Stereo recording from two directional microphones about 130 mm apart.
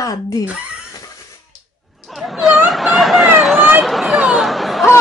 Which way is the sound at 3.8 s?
Centre (ahead or behind).